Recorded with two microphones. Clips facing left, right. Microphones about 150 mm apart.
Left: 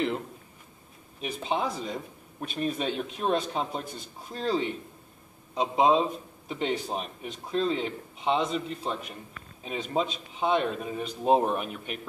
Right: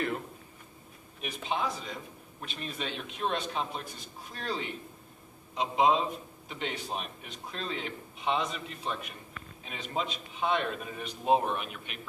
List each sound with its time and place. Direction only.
1.2 s a man's voice: 35° left (ahead or behind)
2.4 s a man's voice: 45° left (ahead or behind)